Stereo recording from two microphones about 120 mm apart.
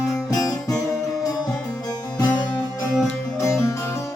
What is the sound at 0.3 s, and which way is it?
Music, 30° left (ahead or behind).